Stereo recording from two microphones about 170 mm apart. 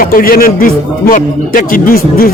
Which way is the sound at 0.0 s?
55° left (ahead or behind).